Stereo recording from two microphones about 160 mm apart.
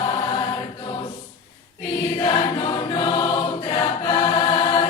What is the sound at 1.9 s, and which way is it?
Choir, 30° left (ahead or behind).